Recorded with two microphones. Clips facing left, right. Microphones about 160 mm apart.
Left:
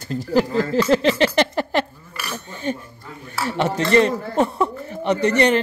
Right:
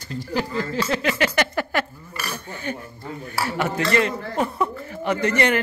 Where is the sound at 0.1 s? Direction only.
40° left (ahead or behind).